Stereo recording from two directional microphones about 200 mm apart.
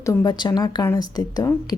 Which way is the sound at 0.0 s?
15° left (ahead or behind).